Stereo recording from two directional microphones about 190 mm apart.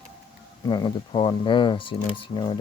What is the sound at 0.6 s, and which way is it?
Speech, 25° left (ahead or behind).